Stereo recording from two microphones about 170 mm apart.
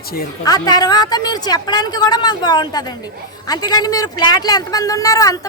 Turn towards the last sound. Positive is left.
turn(degrees=20)  # may be behind; listen again after turning